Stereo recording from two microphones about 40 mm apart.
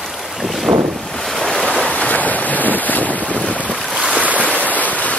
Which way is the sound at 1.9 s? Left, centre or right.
Left.